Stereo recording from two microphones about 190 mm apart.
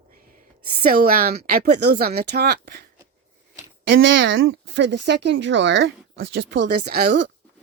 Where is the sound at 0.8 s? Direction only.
50° right (ahead or behind).